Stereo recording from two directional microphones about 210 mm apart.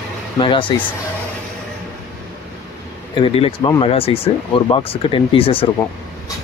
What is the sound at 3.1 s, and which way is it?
Speech, 25° left (ahead or behind).